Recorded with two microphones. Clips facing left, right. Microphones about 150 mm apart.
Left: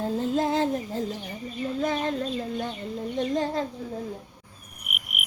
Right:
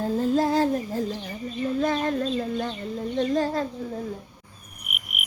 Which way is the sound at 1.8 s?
20° left (ahead or behind).